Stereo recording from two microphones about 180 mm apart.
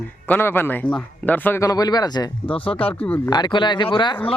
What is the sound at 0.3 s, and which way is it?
A man's voice, 10° left (ahead or behind).